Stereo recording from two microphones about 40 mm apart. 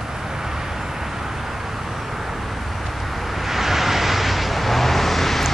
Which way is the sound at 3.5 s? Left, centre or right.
Centre.